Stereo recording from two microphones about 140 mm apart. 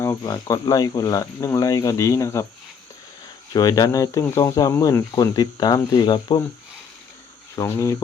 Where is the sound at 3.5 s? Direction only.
25° left (ahead or behind).